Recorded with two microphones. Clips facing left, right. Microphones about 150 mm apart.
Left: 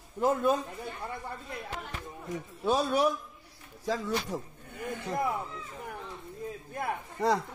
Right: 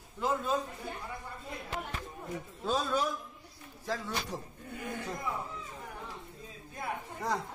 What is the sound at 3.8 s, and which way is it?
Speech, 90° left.